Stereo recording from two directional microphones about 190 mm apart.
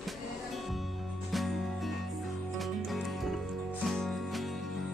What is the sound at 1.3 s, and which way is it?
Music, centre (ahead or behind).